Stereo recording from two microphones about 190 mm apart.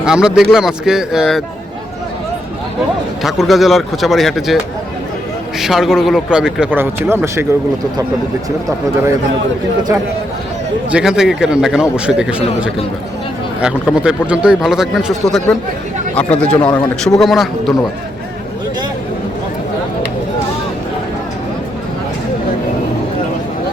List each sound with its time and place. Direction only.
0.0 s speech: 5° right (ahead or behind)
3.2 s speech: centre (ahead or behind)
5.5 s speech: centre (ahead or behind)
10.9 s speech: 5° right (ahead or behind)
13.6 s speech: 5° right (ahead or behind)
16.6 s speech: 25° left (ahead or behind)
17.2 s speech: centre (ahead or behind)